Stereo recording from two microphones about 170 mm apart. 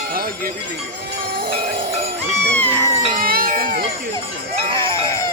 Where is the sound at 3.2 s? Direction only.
55° right (ahead or behind).